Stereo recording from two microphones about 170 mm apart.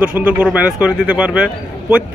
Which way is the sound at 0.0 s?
10° right (ahead or behind).